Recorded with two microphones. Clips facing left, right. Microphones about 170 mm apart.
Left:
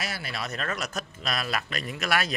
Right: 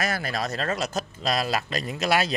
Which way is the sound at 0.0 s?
45° right (ahead or behind).